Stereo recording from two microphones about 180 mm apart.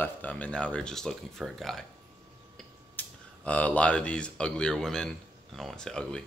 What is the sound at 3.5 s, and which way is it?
Speech, 10° left (ahead or behind).